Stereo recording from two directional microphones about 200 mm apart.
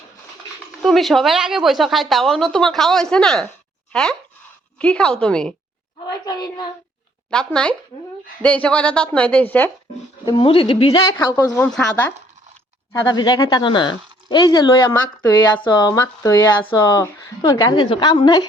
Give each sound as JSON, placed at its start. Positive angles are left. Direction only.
{"t": 0.8, "sound": "speech", "side_deg": 0}
{"t": 6.2, "sound": "speech", "side_deg": 20}
{"t": 7.3, "sound": "a woman's voice", "side_deg": 5}
{"t": 10.2, "sound": "speech", "side_deg": 25}
{"t": 11.3, "sound": "a woman's voice", "side_deg": 10}
{"t": 12.9, "sound": "speech", "side_deg": 20}
{"t": 14.9, "sound": "a woman's voice", "side_deg": 10}
{"t": 15.6, "sound": "speech", "side_deg": 20}